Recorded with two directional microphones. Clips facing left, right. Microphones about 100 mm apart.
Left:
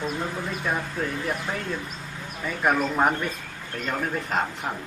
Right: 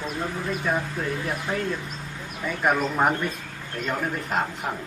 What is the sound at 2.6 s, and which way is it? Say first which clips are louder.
Speech: even; centre (ahead or behind).